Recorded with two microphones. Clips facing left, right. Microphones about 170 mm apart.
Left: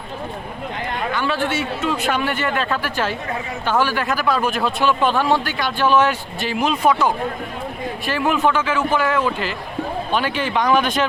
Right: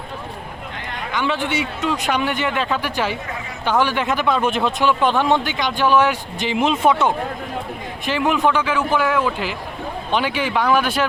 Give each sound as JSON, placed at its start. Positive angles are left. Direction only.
{"t": 1.1, "sound": "a man's voice", "side_deg": -15}